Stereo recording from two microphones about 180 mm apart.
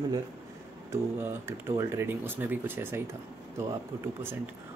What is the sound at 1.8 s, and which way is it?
Speech, 15° right (ahead or behind).